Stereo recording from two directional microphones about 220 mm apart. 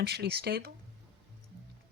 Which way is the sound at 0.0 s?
45° right (ahead or behind).